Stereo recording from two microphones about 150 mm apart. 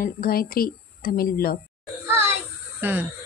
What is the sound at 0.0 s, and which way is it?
A woman's voice, 80° left.